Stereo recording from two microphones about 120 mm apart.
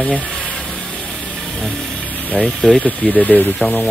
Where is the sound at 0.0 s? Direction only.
10° left (ahead or behind).